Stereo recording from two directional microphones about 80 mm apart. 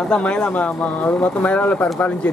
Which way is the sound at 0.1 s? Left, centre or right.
Centre.